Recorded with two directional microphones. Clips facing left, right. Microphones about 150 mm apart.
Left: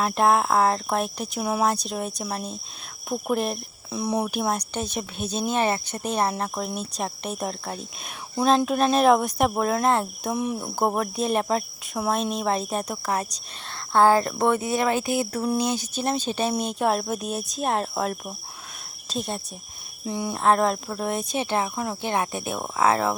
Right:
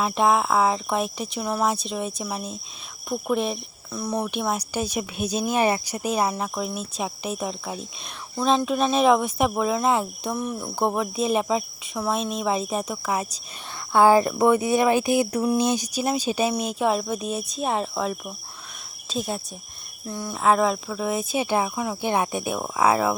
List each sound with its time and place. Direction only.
0.0 s speech: centre (ahead or behind)
3.9 s speech: 10° left (ahead or behind)
4.7 s speech: 10° right (ahead or behind)
10.3 s speech: 10° left (ahead or behind)
19.0 s cricket: centre (ahead or behind)
20.1 s speech: 15° left (ahead or behind)
20.3 s speech: centre (ahead or behind)